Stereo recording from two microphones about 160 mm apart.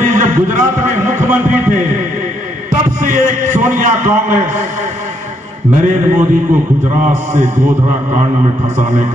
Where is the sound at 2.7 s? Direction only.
55° right (ahead or behind).